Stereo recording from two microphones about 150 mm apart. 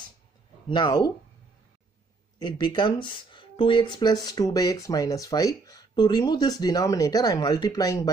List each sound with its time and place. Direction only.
0.7 s speech: 30° left (ahead or behind)
2.3 s speech: 30° left (ahead or behind)